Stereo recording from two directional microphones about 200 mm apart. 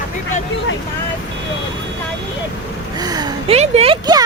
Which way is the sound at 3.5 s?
30° right (ahead or behind).